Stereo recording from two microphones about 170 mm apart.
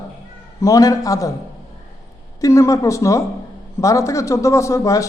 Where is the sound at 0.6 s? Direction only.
20° left (ahead or behind).